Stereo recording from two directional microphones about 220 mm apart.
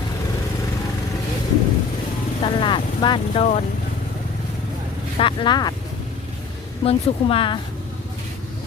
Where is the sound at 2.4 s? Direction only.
20° left (ahead or behind).